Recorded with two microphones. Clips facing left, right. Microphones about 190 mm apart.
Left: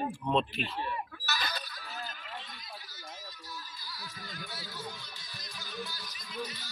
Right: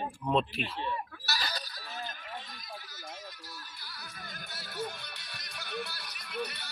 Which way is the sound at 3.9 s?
60° right (ahead or behind).